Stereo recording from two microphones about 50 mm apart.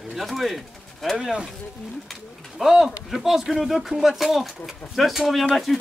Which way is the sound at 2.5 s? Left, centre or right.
Centre.